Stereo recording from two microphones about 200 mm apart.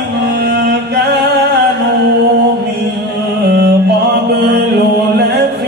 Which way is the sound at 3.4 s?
55° right (ahead or behind).